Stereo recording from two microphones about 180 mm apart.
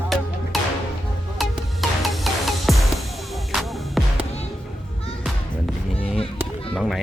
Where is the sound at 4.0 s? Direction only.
Centre (ahead or behind).